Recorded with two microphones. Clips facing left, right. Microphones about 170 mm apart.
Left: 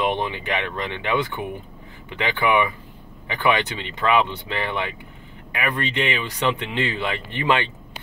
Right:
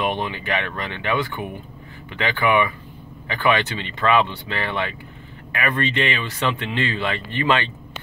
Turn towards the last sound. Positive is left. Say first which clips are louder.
# right 1 dB
turn(degrees=15)  # may be behind; listen again after turning